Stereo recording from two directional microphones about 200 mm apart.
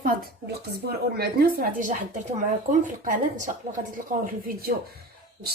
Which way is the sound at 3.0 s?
40° right (ahead or behind).